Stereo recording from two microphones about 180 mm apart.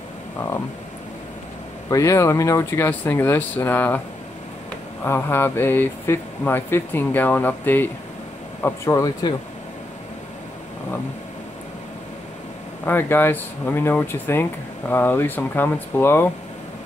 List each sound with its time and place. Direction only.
1.9 s speech: 15° left (ahead or behind)
5.0 s speech: 10° left (ahead or behind)
12.8 s speech: 10° left (ahead or behind)